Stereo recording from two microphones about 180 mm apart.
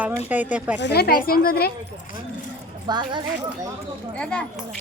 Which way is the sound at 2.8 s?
25° right (ahead or behind).